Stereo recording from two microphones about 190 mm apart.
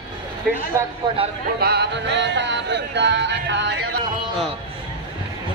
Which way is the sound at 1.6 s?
60° right (ahead or behind).